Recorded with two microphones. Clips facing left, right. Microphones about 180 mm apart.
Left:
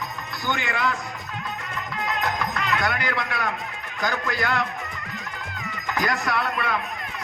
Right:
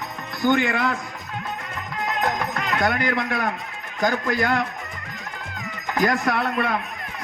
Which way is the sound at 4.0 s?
45° right (ahead or behind).